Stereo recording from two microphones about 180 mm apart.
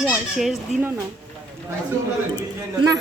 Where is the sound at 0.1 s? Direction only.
Centre (ahead or behind).